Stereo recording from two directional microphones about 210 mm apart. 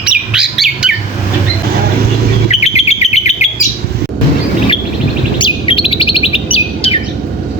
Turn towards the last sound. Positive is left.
turn(degrees=25)  # may be behind; listen again after turning